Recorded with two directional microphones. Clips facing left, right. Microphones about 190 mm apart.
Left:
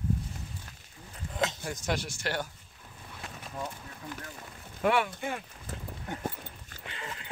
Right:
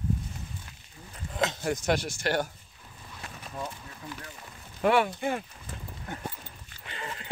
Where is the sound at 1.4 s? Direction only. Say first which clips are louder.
Right 4 dB; 70° right (ahead or behind).